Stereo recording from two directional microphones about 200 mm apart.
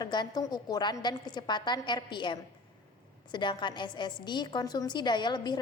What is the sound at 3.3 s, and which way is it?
A woman's voice, 25° left (ahead or behind).